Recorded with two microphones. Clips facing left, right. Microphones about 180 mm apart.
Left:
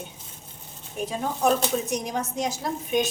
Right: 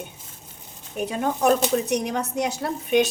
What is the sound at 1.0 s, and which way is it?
A woman's voice, 65° right (ahead or behind).